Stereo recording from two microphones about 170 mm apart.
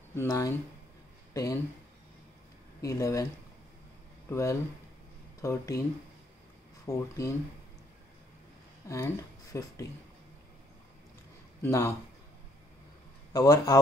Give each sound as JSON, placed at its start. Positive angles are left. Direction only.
{"t": 0.1, "sound": "speech", "side_deg": 15}
{"t": 2.8, "sound": "a man's voice", "side_deg": 20}
{"t": 4.3, "sound": "a man's voice", "side_deg": 20}
{"t": 6.9, "sound": "speech", "side_deg": 20}
{"t": 8.8, "sound": "speech", "side_deg": 20}
{"t": 11.6, "sound": "speech", "side_deg": 15}
{"t": 13.3, "sound": "a man's voice", "side_deg": 20}